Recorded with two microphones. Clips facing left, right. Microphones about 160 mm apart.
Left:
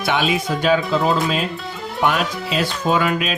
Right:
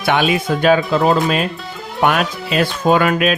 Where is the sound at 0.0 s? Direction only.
55° right (ahead or behind).